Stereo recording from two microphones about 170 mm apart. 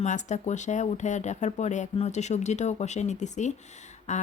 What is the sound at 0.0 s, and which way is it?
Speech, 45° left (ahead or behind).